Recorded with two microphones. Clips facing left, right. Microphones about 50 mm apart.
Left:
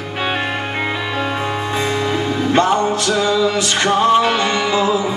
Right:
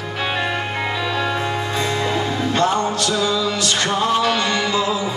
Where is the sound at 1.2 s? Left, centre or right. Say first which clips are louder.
Left 1 dB; left.